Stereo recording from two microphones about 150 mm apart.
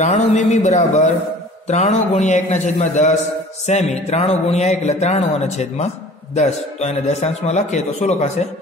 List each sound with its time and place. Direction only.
0.0 s a man's voice: 50° left (ahead or behind)